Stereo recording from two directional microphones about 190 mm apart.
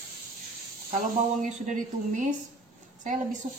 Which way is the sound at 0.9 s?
40° right (ahead or behind).